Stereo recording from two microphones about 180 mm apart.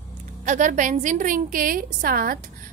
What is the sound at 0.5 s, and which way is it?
A woman's voice, 45° right (ahead or behind).